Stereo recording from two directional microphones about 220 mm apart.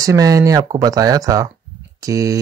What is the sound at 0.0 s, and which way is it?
Speech, 15° right (ahead or behind).